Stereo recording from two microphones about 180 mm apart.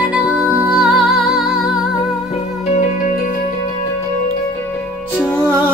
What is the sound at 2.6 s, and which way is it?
Music, 40° left (ahead or behind).